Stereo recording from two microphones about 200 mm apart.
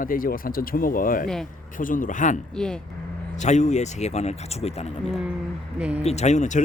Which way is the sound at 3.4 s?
35° left (ahead or behind).